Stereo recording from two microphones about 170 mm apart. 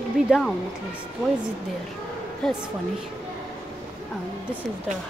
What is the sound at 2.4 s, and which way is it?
Speech, centre (ahead or behind).